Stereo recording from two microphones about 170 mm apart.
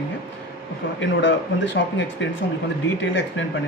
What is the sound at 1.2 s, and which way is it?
Speech, 90° left.